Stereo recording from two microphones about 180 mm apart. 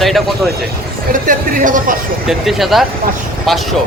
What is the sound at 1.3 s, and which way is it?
Speech, 50° right (ahead or behind).